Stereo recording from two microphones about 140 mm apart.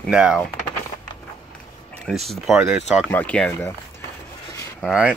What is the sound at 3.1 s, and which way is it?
Speech, 10° left (ahead or behind).